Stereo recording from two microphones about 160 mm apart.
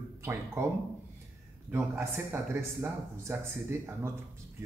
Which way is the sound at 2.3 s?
15° right (ahead or behind).